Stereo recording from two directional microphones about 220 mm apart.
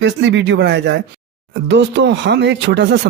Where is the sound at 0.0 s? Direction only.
55° right (ahead or behind).